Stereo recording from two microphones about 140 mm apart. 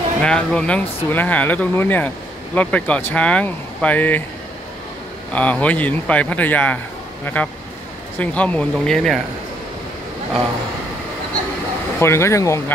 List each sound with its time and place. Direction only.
0.2 s speech: 5° left (ahead or behind)
5.3 s speech: 10° left (ahead or behind)
12.0 s speech: 20° left (ahead or behind)